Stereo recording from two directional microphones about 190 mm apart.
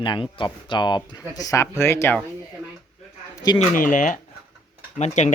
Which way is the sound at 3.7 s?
45° left (ahead or behind).